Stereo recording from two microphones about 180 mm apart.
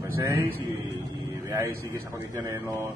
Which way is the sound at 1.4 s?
15° right (ahead or behind).